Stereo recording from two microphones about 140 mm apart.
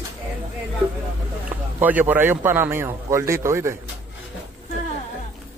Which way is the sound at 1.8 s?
10° right (ahead or behind).